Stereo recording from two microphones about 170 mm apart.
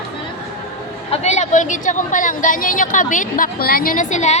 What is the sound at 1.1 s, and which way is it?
A woman's voice, 40° left (ahead or behind).